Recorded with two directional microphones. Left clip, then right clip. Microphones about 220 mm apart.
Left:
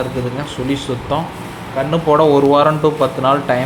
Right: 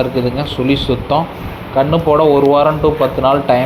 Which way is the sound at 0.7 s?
10° right (ahead or behind).